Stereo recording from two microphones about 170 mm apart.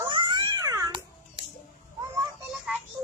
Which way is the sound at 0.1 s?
25° right (ahead or behind).